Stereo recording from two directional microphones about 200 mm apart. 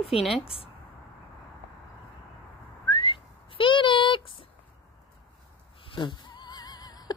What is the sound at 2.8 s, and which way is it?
Whistling, 25° left (ahead or behind).